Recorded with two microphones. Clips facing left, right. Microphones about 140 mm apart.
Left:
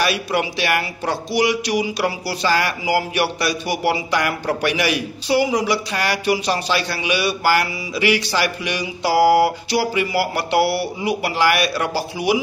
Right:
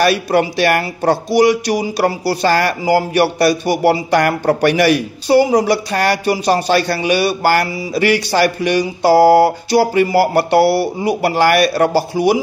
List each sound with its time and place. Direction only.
0.0 s speech: 50° right (ahead or behind)